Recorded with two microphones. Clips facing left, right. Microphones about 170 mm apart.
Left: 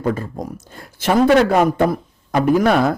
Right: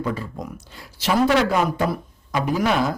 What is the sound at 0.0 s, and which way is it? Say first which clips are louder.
Speech: left 5 dB; 45° left (ahead or behind).